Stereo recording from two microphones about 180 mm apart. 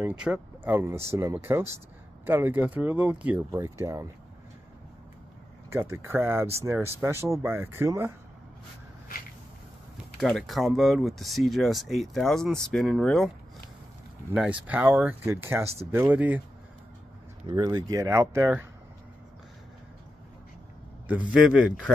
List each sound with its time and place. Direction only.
0.0 s speech: 5° right (ahead or behind)
5.7 s speech: 15° right (ahead or behind)
10.2 s speech: centre (ahead or behind)
14.3 s speech: 5° right (ahead or behind)
17.5 s speech: 20° right (ahead or behind)
21.3 s speech: 5° right (ahead or behind)